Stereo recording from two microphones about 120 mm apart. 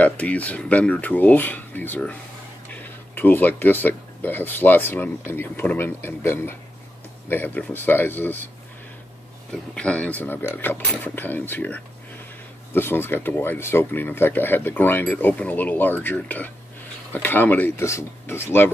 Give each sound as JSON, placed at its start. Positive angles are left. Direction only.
{"t": 0.0, "sound": "speech", "side_deg": 10}
{"t": 9.5, "sound": "speech", "side_deg": 10}